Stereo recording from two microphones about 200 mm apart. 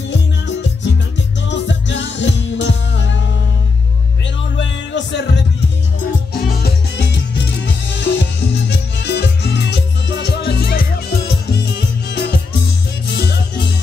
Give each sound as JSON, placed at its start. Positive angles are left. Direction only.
{"t": 0.1, "sound": "music", "side_deg": 65}
{"t": 4.6, "sound": "music", "side_deg": 60}